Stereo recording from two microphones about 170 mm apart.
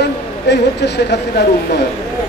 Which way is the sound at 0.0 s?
85° left.